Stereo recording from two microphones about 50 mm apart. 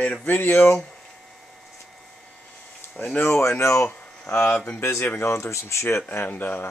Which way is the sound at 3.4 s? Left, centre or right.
Left.